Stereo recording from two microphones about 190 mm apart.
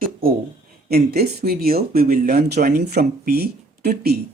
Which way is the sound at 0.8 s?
55° right (ahead or behind).